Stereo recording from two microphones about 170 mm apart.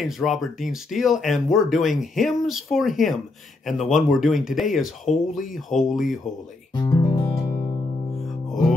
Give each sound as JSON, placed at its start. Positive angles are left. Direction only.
{"t": 0.0, "sound": "speech", "side_deg": 0}
{"t": 5.0, "sound": "speech", "side_deg": 50}
{"t": 5.5, "sound": "speech", "side_deg": 0}
{"t": 6.7, "sound": "music", "side_deg": 25}